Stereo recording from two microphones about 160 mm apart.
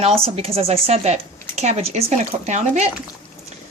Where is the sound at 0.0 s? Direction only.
40° right (ahead or behind).